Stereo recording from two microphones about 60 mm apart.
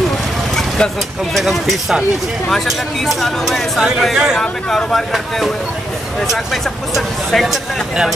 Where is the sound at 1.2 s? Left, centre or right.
Centre.